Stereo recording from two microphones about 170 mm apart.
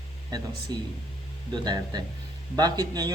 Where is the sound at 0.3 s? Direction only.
25° right (ahead or behind).